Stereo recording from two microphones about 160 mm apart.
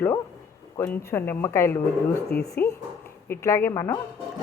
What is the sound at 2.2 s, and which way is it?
Speech, 80° left.